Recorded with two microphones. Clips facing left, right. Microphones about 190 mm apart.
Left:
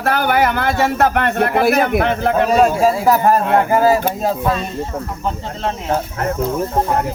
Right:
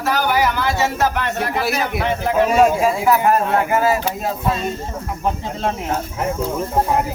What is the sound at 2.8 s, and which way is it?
Speech, 35° left (ahead or behind).